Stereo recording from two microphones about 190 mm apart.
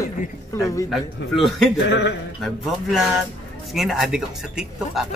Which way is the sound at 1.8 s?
65° left (ahead or behind).